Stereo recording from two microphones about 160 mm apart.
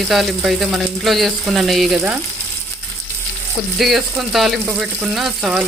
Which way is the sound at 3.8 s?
Centre (ahead or behind).